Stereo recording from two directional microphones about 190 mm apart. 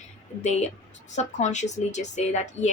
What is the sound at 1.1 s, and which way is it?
A woman's voice, 40° left (ahead or behind).